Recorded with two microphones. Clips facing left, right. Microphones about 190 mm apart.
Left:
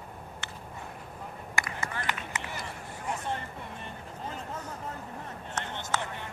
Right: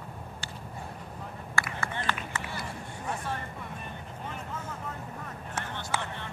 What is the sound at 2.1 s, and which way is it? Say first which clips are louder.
Run: right 1 dB; 20° left (ahead or behind).